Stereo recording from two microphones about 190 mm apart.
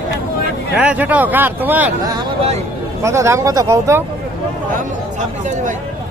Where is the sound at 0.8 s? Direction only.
10° right (ahead or behind).